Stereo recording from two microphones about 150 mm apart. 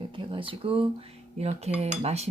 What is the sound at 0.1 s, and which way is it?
Cutlery, 35° right (ahead or behind).